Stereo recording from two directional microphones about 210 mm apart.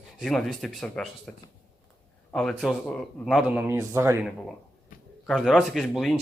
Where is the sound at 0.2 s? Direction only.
Centre (ahead or behind).